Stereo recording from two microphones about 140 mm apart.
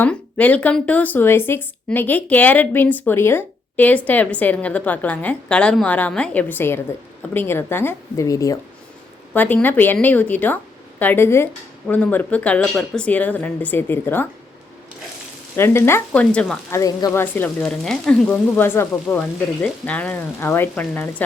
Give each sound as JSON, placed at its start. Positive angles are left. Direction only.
{"t": 0.0, "sound": "speech", "side_deg": 10}
{"t": 9.3, "sound": "speech", "side_deg": 15}
{"t": 15.5, "sound": "speech", "side_deg": 15}
{"t": 16.7, "sound": "speech", "side_deg": 25}
{"t": 17.3, "sound": "speech", "side_deg": 10}